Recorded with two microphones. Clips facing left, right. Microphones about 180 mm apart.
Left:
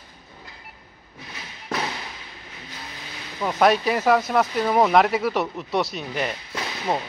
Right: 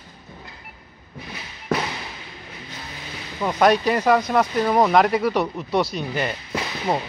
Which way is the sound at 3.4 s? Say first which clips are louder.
Right 1 dB; centre (ahead or behind).